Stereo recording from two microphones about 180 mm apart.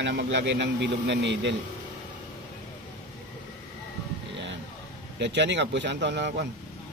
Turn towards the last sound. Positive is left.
turn(degrees=-75)  # may be behind; listen again after turning